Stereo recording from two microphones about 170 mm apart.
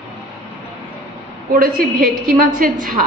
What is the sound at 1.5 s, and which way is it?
A woman's voice, 55° right (ahead or behind).